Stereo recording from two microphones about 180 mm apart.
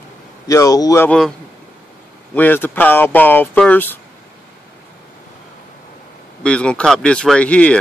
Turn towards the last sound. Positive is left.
turn(degrees=5)  # may be behind; listen again after turning